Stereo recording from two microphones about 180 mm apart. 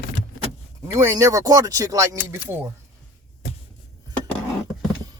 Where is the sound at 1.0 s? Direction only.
15° right (ahead or behind).